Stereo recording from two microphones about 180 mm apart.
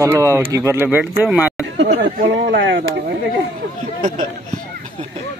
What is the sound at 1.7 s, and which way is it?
Speech, 60° right (ahead or behind).